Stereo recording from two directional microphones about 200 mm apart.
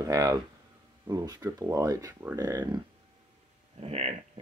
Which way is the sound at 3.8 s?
30° right (ahead or behind).